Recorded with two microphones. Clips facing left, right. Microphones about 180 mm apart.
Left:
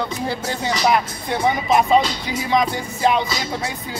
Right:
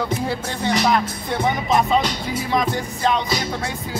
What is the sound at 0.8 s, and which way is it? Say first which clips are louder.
Speech: left 1 dB; 5° left (ahead or behind).